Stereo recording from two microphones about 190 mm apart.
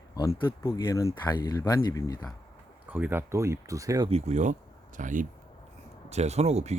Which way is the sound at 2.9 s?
10° right (ahead or behind).